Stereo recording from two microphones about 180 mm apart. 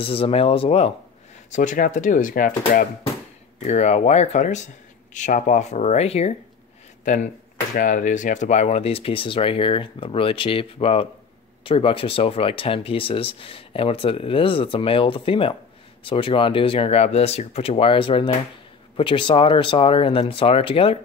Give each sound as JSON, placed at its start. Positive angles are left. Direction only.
{"t": 0.0, "sound": "speech", "side_deg": 30}
{"t": 1.5, "sound": "speech", "side_deg": 45}
{"t": 3.6, "sound": "speech", "side_deg": 40}
{"t": 7.7, "sound": "speech", "side_deg": 45}